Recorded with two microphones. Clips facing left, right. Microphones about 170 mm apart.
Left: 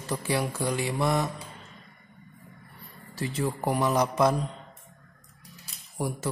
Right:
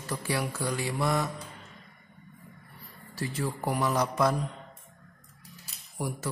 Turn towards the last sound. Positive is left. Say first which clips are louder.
# left 3 dB
turn(degrees=25)  # may be behind; listen again after turning